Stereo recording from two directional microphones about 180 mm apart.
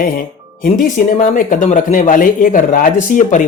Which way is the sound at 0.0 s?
50° left (ahead or behind).